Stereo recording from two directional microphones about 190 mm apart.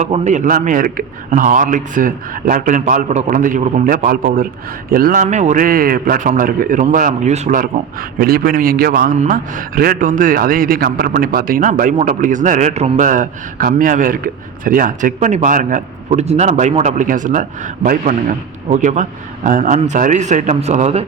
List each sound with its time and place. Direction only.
0.0 s a man's voice: 35° right (ahead or behind)